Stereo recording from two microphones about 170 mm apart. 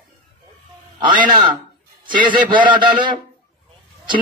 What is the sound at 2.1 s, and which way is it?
A man's voice, 25° right (ahead or behind).